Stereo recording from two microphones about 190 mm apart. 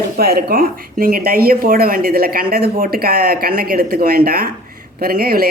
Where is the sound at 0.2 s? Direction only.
55° right (ahead or behind).